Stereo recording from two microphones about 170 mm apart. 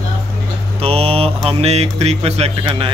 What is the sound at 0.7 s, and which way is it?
A man's voice, 35° right (ahead or behind).